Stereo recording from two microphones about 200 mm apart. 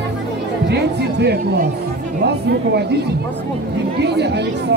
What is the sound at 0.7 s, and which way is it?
Speech, 55° right (ahead or behind).